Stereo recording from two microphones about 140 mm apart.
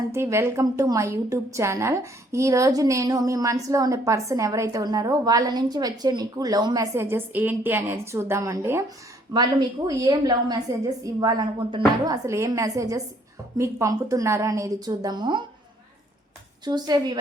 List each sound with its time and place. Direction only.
0.1 s a woman's voice: 20° right (ahead or behind)
16.6 s a woman's voice: 30° right (ahead or behind)